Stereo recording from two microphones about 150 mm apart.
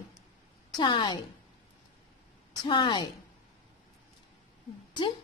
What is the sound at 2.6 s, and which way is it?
Speech, 30° left (ahead or behind).